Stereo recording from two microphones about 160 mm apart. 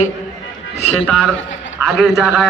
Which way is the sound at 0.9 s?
Centre (ahead or behind).